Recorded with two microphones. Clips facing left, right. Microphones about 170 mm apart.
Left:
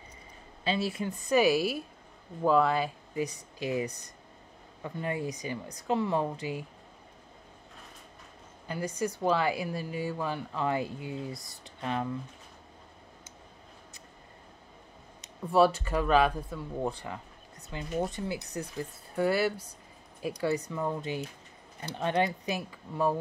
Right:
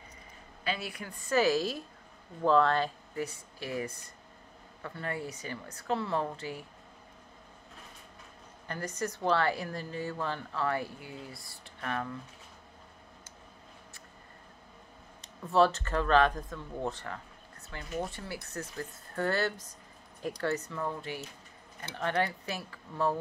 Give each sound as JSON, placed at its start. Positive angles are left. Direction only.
{"t": 0.7, "sound": "a woman's voice", "side_deg": 25}
{"t": 8.6, "sound": "speech", "side_deg": 10}
{"t": 15.4, "sound": "speech", "side_deg": 10}